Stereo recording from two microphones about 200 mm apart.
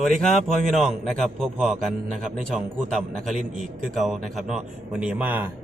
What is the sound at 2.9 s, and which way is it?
Speech, centre (ahead or behind).